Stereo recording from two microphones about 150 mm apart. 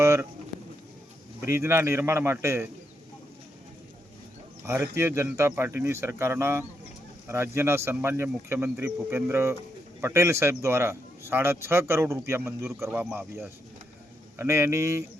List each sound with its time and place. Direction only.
0.0 s livestock: 20° right (ahead or behind)
1.5 s a man's voice: 20° right (ahead or behind)
4.6 s a man's voice: 15° right (ahead or behind)